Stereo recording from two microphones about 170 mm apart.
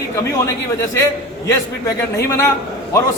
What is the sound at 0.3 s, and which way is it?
A man's voice, 15° left (ahead or behind).